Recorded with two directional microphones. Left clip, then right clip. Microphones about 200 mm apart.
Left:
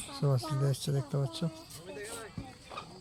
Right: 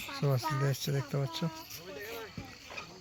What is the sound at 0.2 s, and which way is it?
Speech, 5° left (ahead or behind).